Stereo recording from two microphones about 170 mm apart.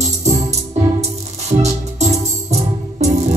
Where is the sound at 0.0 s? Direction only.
40° right (ahead or behind).